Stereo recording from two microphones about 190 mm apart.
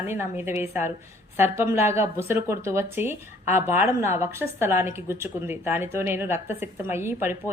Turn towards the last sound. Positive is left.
turn(degrees=-15)  # may be behind; listen again after turning